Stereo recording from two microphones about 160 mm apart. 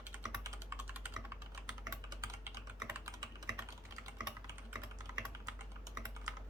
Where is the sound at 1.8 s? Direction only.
20° right (ahead or behind).